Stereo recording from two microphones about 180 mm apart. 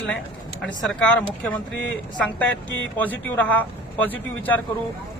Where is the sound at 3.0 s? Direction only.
10° left (ahead or behind).